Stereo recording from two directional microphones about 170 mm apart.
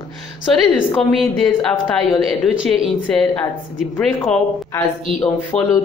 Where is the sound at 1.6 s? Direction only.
5° left (ahead or behind).